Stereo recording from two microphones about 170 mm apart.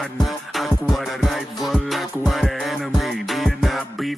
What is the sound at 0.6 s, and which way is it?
Music, centre (ahead or behind).